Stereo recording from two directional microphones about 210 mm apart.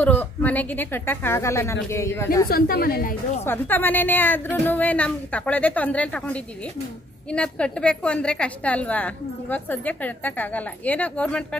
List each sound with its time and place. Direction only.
0.0 s a woman's voice: 10° left (ahead or behind)
2.4 s a woman's voice: 45° left (ahead or behind)
3.4 s a woman's voice: 10° left (ahead or behind)